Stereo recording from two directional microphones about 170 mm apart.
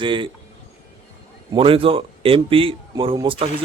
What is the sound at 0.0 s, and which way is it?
Speech, 30° right (ahead or behind).